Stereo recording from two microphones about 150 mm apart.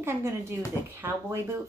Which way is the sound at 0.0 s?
20° right (ahead or behind).